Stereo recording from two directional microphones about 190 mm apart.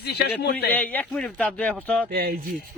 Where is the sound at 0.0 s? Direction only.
60° left (ahead or behind).